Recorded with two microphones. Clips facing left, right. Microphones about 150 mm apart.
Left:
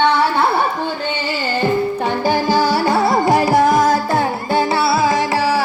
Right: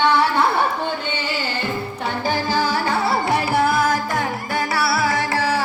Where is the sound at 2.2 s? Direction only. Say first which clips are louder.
Left 5 dB; 45° left (ahead or behind).